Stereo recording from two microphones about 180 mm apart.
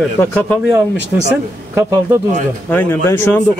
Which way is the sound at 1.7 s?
15° right (ahead or behind).